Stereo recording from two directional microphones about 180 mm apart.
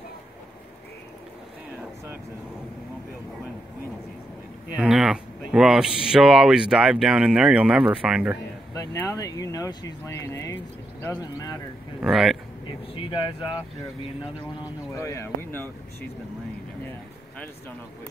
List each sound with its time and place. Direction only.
4.7 s a sound: 5° right (ahead or behind)
6.0 s speech: 5° right (ahead or behind)
8.7 s speech: 15° left (ahead or behind)
12.0 s speech: centre (ahead or behind)
12.9 s speech: 25° left (ahead or behind)